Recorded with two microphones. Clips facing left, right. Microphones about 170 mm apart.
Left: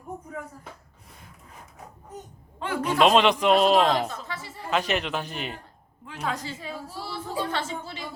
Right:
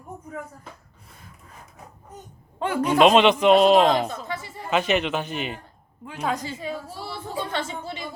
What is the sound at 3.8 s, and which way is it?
Speech, 15° right (ahead or behind).